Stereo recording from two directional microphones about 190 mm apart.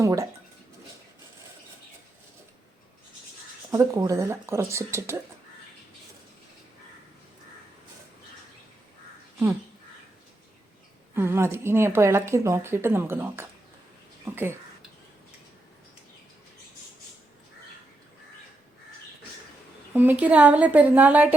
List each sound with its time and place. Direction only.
0.0 s a woman's voice: 15° right (ahead or behind)
3.7 s a woman's voice: 15° right (ahead or behind)
11.1 s a woman's voice: 10° right (ahead or behind)
19.9 s a woman's voice: 10° right (ahead or behind)